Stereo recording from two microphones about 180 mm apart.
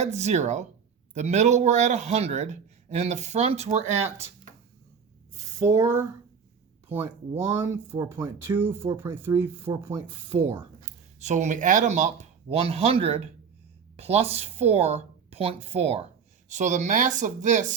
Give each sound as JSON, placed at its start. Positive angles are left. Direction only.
{"t": 0.0, "sound": "speech", "side_deg": -40}
{"t": 5.5, "sound": "speech", "side_deg": -15}
{"t": 9.8, "sound": "speech", "side_deg": -25}
{"t": 10.8, "sound": "a woman's voice", "side_deg": -40}